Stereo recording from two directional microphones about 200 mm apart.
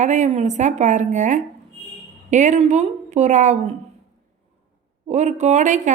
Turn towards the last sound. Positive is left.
turn(degrees=-35)  # may be behind; listen again after turning